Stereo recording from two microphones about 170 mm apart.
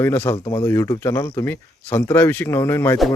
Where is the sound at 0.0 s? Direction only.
15° left (ahead or behind).